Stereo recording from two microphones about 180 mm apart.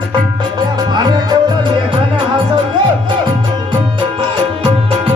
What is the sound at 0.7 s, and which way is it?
Music, 20° right (ahead or behind).